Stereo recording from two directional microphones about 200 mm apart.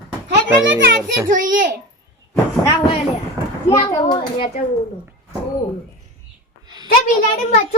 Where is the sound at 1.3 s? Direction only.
40° right (ahead or behind).